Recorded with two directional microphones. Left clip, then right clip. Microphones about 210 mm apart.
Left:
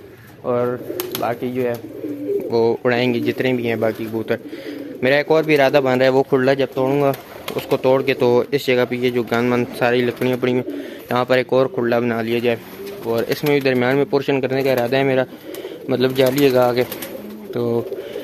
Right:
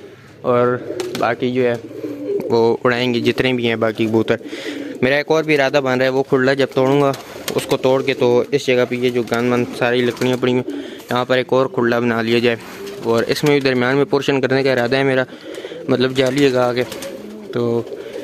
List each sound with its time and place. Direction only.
0.5 s speech: 25° right (ahead or behind)
6.1 s speech: 10° right (ahead or behind)
6.7 s speech: 35° right (ahead or behind)
7.9 s speech: 5° right (ahead or behind)